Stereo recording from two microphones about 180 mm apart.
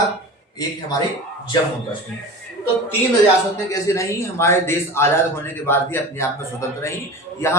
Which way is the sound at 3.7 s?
15° left (ahead or behind).